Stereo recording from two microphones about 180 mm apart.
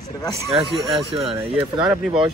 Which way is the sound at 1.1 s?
30° right (ahead or behind).